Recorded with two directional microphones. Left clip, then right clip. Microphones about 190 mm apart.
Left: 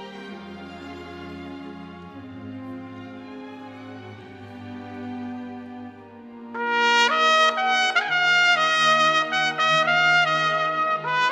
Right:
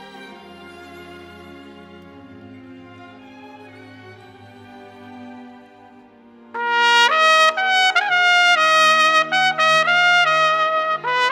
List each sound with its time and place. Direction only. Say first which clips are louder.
6.5 s trumpet: right 4 dB; 35° right (ahead or behind)